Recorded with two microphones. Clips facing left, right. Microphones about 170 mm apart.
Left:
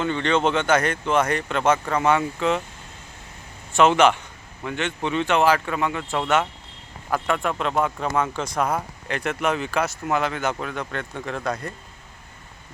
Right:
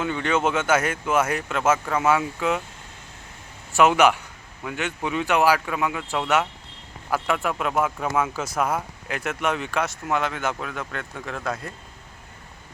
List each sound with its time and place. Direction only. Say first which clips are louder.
0.0 s speech: left 2 dB; 5° right (ahead or behind)
3.8 s a man's voice: left 1 dB; 5° right (ahead or behind)